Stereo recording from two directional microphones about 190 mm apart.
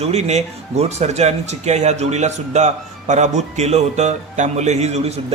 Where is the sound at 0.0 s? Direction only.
35° right (ahead or behind).